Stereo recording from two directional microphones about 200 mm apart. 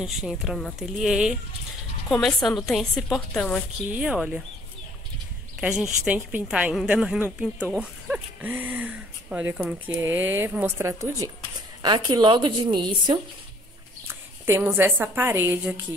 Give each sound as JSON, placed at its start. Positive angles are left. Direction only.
{"t": 0.0, "sound": "a woman's voice", "side_deg": -5}
{"t": 5.6, "sound": "a woman's voice", "side_deg": -5}
{"t": 14.0, "sound": "a woman's voice", "side_deg": -10}